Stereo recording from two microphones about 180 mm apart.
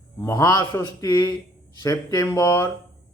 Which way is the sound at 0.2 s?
20° left (ahead or behind).